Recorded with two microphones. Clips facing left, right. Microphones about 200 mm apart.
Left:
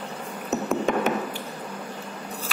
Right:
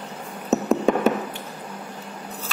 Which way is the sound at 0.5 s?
35° right (ahead or behind).